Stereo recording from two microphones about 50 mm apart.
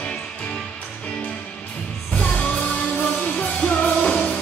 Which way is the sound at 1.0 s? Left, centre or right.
Left.